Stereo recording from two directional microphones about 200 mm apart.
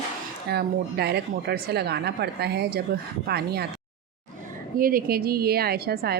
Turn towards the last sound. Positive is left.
turn(degrees=-50)  # may be behind; listen again after turning